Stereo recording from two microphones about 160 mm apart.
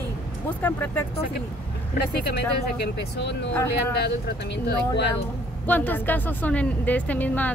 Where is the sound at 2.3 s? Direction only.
90° left.